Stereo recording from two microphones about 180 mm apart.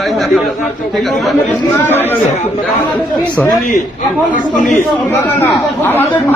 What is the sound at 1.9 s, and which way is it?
Speech, 10° left (ahead or behind).